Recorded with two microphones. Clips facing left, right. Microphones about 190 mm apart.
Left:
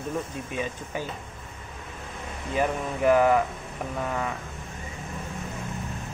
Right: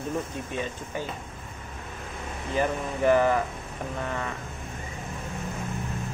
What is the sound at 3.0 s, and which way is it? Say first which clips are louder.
Speech: left 1 dB; centre (ahead or behind).